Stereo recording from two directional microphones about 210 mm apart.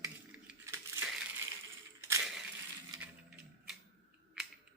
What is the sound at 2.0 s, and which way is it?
Coin, 15° right (ahead or behind).